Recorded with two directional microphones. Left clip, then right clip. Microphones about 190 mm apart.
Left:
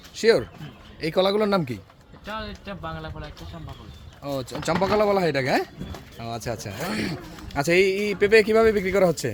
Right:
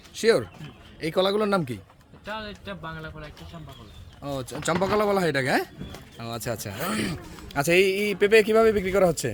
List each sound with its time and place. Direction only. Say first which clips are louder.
0.2 s a man's voice: left 2 dB; 10° right (ahead or behind)